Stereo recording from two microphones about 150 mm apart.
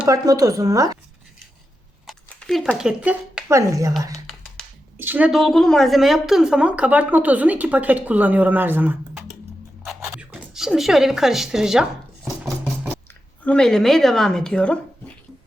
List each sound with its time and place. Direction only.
0.1 s speech: 25° right (ahead or behind)
2.0 s speech: 5° left (ahead or behind); by 4.1 s 20° right (ahead or behind)
4.3 s finger snapping: centre (ahead or behind)
4.9 s speech: 10° right (ahead or behind)
5.3 s speech: centre (ahead or behind)
9.8 s a sound: 5° right (ahead or behind)
13.4 s speech: 5° left (ahead or behind)